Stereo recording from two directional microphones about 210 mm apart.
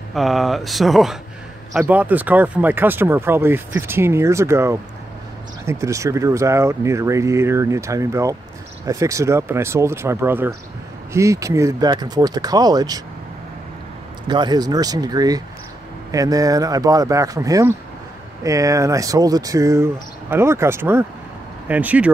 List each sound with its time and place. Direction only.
0.1 s speech: centre (ahead or behind); by 13.0 s 20° right (ahead or behind)
14.2 s speech: 20° right (ahead or behind)